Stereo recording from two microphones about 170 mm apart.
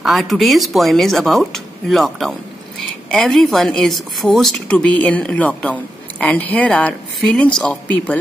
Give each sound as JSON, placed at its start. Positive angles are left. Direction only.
{"t": 0.0, "sound": "a woman's voice", "side_deg": 0}